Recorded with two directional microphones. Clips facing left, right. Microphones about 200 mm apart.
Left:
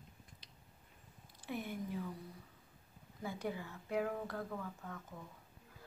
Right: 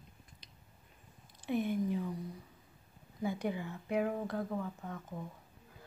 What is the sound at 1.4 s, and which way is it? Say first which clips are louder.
Speech: right 9 dB; 20° right (ahead or behind).